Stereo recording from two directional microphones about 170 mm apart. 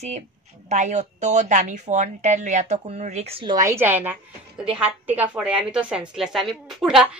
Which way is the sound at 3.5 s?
15° right (ahead or behind).